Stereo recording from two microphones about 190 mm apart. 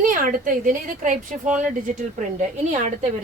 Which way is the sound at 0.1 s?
45° right (ahead or behind).